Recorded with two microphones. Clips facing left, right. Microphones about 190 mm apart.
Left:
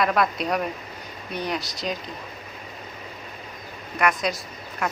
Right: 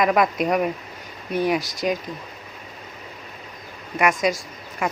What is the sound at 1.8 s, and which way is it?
Speech, 10° right (ahead or behind).